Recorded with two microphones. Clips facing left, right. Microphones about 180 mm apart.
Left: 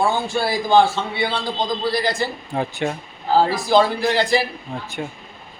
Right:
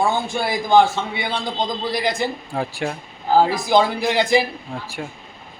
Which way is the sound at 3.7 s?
15° right (ahead or behind).